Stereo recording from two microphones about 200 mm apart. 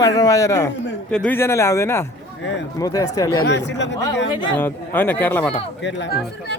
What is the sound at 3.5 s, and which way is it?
Speech, 60° left (ahead or behind).